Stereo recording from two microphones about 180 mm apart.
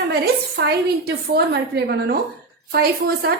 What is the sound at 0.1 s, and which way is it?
A woman's voice, 65° right (ahead or behind).